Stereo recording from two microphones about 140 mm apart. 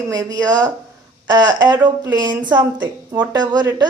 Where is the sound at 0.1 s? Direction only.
30° right (ahead or behind).